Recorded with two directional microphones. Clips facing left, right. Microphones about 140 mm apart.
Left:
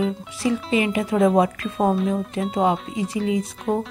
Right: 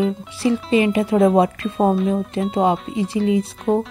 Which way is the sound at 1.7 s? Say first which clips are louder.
Right 3 dB; centre (ahead or behind).